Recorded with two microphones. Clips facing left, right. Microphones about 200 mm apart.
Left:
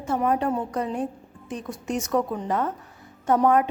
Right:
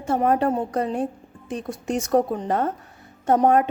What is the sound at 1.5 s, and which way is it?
Speech, 30° right (ahead or behind).